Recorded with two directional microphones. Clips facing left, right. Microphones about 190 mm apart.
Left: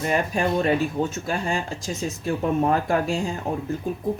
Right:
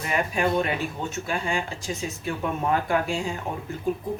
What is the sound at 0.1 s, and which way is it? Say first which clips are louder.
Speech: even; 35° left (ahead or behind).